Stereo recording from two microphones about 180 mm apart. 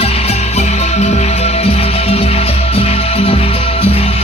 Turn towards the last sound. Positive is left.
turn(degrees=35)  # may be behind; listen again after turning